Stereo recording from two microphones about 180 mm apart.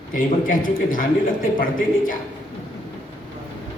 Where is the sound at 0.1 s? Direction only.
50° left (ahead or behind).